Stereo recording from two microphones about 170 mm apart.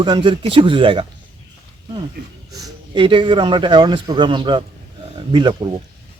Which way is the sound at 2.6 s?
30° right (ahead or behind).